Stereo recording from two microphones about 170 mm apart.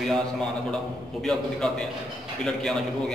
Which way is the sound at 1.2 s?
5° left (ahead or behind).